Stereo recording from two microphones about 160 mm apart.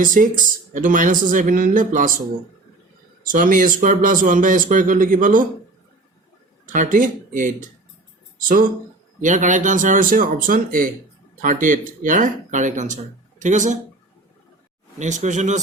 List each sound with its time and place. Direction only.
0.0 s speech: 60° right (ahead or behind)
3.3 s speech: 55° right (ahead or behind)
6.7 s speech: 55° right (ahead or behind)
9.2 s speech: 50° right (ahead or behind)
14.9 s speech: 50° right (ahead or behind)